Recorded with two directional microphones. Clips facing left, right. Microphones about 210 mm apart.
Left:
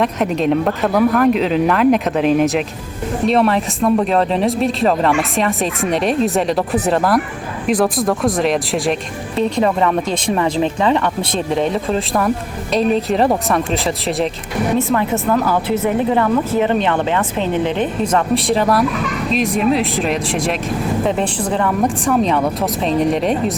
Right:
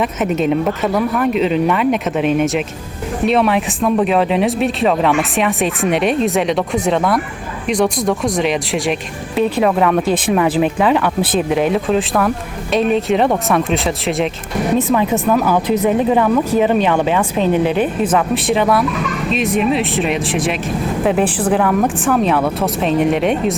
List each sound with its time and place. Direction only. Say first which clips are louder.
0.0 s speech: even; 5° right (ahead or behind)
14.9 s speech: right 2 dB; 10° right (ahead or behind)